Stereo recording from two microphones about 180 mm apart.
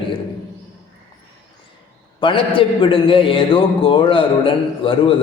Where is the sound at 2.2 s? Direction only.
30° left (ahead or behind).